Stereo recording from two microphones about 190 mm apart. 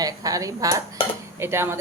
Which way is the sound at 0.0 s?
20° right (ahead or behind).